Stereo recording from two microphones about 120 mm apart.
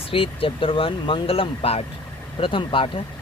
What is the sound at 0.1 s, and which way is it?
Speech, 50° left (ahead or behind).